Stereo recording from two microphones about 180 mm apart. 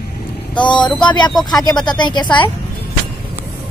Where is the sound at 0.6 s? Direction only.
25° left (ahead or behind).